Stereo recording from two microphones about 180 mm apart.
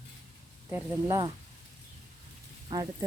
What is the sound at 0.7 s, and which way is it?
Speech, 20° right (ahead or behind).